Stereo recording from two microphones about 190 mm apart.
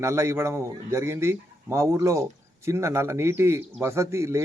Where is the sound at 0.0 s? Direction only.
15° right (ahead or behind).